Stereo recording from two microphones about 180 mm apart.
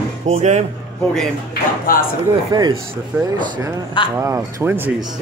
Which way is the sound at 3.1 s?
10° right (ahead or behind).